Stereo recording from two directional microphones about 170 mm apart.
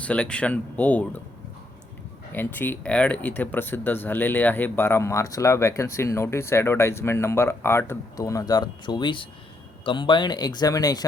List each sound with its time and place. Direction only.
0.0 s speech: 5° left (ahead or behind)
2.3 s speech: 10° left (ahead or behind)